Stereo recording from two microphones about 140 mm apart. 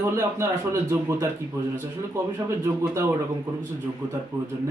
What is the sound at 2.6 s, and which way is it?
Speech, 20° right (ahead or behind).